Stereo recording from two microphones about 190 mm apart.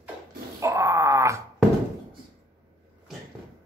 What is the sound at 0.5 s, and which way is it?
Cat, 15° right (ahead or behind).